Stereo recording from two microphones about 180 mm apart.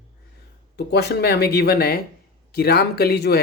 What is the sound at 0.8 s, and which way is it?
Speech, 65° left (ahead or behind).